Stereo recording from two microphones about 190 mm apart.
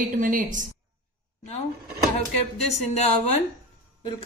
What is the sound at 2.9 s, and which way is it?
Speech, 35° left (ahead or behind).